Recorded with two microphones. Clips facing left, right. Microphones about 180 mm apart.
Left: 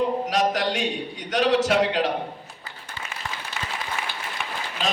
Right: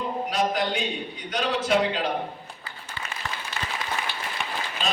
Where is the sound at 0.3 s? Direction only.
80° left.